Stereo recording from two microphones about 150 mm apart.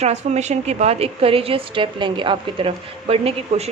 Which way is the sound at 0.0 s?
50° right (ahead or behind).